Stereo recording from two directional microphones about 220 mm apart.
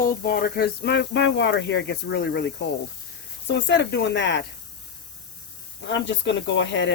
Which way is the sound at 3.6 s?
55° left (ahead or behind).